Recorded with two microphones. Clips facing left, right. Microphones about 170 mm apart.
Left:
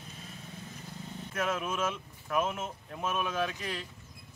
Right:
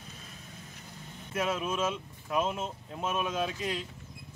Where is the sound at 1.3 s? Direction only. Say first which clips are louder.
Right 2 dB; 15° right (ahead or behind).